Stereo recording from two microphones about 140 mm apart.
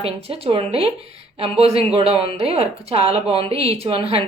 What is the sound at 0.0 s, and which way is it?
Speech, 45° right (ahead or behind).